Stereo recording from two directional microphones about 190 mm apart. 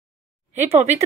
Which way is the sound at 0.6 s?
35° right (ahead or behind).